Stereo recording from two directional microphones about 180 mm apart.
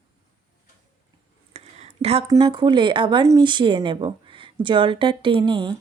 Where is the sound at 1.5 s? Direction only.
35° right (ahead or behind).